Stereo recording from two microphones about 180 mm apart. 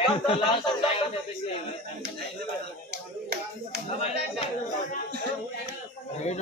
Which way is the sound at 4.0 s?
30° left (ahead or behind).